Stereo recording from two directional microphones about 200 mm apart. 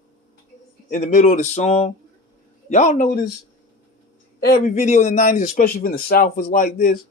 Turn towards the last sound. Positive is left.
turn(degrees=45)  # may be behind; listen again after turning